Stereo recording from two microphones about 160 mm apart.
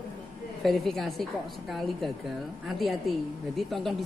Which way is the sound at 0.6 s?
Centre (ahead or behind).